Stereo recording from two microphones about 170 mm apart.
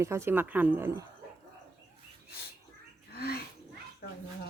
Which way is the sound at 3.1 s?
65° left (ahead or behind).